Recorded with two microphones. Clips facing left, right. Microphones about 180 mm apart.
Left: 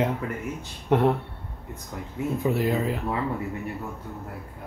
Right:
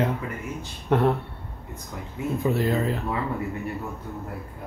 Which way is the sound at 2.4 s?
10° left (ahead or behind).